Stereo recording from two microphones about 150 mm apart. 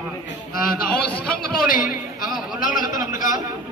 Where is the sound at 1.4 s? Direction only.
65° left (ahead or behind).